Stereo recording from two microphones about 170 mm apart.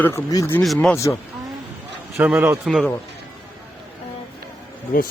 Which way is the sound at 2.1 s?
10° right (ahead or behind).